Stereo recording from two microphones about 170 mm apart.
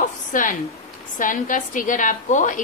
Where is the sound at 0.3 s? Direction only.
50° left (ahead or behind).